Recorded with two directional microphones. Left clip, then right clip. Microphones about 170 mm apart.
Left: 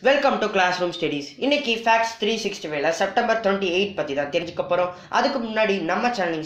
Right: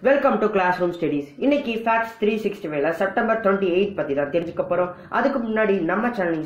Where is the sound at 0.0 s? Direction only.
25° left (ahead or behind).